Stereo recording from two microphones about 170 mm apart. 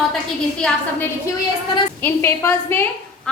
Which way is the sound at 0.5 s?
5° left (ahead or behind).